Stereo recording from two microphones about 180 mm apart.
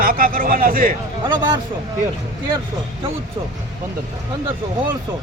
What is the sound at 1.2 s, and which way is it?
Speech, 25° right (ahead or behind).